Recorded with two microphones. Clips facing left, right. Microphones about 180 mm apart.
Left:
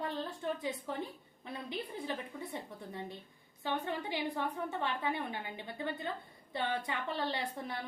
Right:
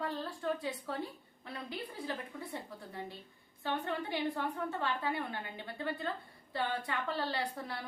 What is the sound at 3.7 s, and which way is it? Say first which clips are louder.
A woman's voice: even; 20° left (ahead or behind).